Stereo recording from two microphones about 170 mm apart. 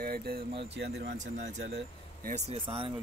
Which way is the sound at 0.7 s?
80° right.